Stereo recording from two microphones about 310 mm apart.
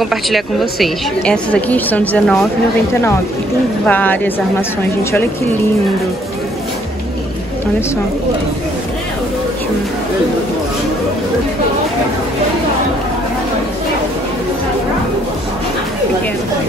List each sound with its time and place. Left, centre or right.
0.0 s a woman's voice: centre